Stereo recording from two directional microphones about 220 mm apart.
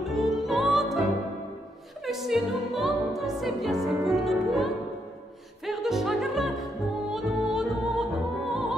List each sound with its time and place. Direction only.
0.0 s music: centre (ahead or behind)